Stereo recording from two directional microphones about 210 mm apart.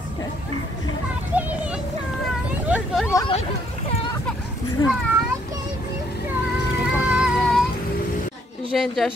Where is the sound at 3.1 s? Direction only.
20° left (ahead or behind).